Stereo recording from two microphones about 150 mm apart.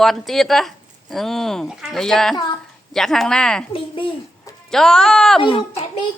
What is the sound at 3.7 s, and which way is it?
Speech, 35° left (ahead or behind).